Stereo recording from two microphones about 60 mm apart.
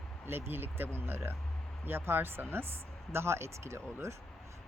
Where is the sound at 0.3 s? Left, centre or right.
Right.